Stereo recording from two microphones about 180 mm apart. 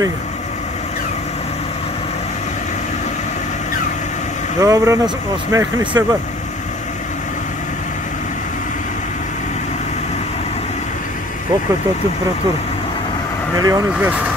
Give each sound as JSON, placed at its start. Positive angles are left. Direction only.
{"t": 4.6, "sound": "speech", "side_deg": -15}
{"t": 13.6, "sound": "speech", "side_deg": -20}